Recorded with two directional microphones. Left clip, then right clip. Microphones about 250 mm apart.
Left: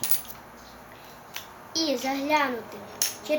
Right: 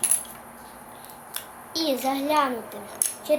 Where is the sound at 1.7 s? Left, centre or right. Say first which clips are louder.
Right 2 dB; centre.